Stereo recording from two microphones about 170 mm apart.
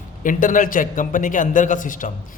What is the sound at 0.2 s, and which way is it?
A man's voice, 50° left (ahead or behind).